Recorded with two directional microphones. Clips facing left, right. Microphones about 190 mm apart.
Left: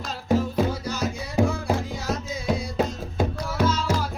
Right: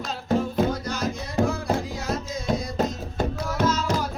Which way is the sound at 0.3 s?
5° left (ahead or behind).